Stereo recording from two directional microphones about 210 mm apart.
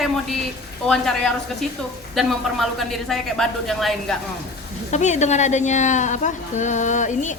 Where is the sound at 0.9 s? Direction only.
5° left (ahead or behind).